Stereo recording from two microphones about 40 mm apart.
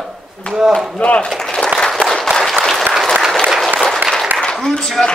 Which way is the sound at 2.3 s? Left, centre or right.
Centre.